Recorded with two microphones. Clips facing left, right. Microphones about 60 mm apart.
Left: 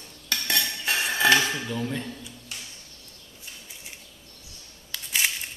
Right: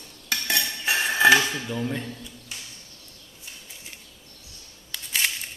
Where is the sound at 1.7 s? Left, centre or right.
Centre.